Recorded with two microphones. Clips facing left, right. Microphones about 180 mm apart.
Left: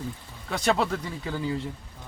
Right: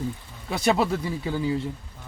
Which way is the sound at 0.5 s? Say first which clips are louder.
Right 2 dB; 10° right (ahead or behind).